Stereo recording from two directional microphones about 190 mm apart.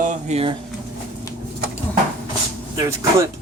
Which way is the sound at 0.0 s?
40° right (ahead or behind).